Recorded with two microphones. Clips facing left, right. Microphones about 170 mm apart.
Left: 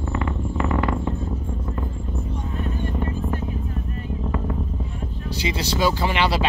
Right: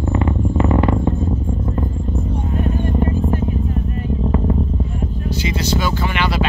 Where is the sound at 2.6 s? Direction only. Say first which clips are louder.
Right 7 dB; 45° right (ahead or behind).